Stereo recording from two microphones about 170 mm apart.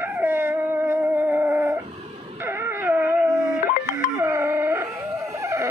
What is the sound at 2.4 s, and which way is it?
Dog, 15° right (ahead or behind).